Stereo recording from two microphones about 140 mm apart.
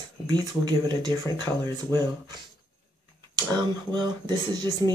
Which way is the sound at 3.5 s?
30° right (ahead or behind).